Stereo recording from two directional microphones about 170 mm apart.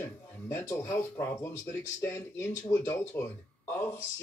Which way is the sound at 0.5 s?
15° left (ahead or behind).